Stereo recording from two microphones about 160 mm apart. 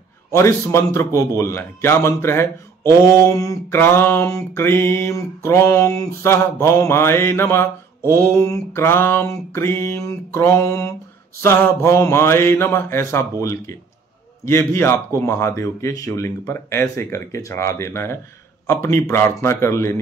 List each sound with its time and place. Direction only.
0.3 s a man's voice: 15° left (ahead or behind)